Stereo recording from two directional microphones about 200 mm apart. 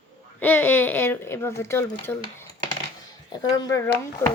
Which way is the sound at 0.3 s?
10° left (ahead or behind).